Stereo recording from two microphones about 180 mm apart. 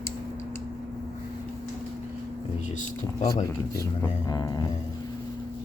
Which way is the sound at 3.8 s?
20° left (ahead or behind).